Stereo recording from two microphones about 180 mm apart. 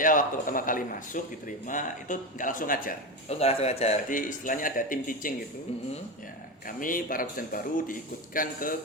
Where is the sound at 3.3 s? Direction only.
35° left (ahead or behind); by 5.3 s 50° left (ahead or behind).